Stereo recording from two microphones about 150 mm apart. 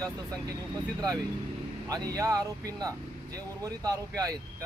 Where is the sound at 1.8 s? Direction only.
25° right (ahead or behind).